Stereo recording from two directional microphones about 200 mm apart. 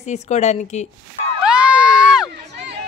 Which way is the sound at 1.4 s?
5° right (ahead or behind).